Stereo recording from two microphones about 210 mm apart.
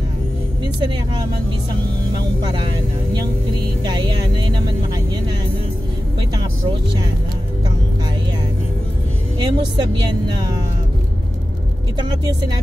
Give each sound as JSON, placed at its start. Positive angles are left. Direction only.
{"t": 0.7, "sound": "a woman's voice", "side_deg": -20}
{"t": 2.4, "sound": "a woman's voice", "side_deg": -20}
{"t": 9.4, "sound": "a woman's voice", "side_deg": -20}
{"t": 12.0, "sound": "a woman's voice", "side_deg": -20}